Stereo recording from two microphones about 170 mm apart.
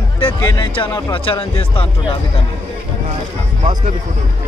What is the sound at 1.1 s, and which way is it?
Speech, 30° left (ahead or behind).